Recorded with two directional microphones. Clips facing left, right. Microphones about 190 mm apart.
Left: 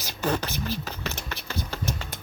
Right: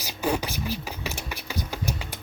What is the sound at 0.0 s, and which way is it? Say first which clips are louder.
Beatboxing: right 1 dB; 10° right (ahead or behind).